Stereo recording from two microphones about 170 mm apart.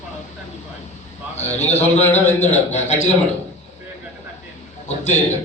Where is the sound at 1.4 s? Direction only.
40° left (ahead or behind).